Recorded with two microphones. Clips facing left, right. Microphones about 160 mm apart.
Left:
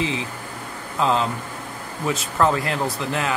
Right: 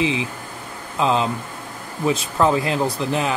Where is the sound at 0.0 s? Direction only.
15° right (ahead or behind).